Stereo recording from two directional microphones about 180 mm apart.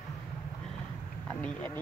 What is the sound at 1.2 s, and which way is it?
Speech, 10° left (ahead or behind).